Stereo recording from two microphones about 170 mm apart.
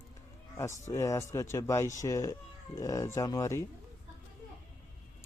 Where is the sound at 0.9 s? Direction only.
15° left (ahead or behind).